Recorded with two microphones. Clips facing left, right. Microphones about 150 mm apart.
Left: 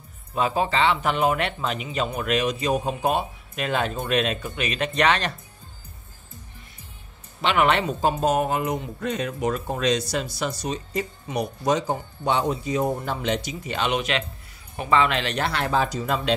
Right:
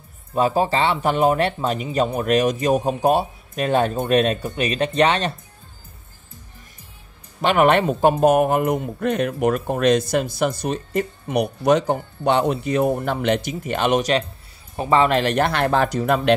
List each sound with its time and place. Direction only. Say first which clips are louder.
0.3 s speech: right 5 dB; 35° right (ahead or behind)
7.4 s speech: right 5 dB; 45° right (ahead or behind)